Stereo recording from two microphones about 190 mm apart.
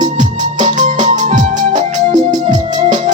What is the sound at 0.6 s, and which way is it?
Music, 40° right (ahead or behind).